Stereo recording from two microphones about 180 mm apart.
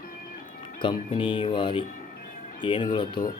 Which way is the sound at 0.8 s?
25° left (ahead or behind).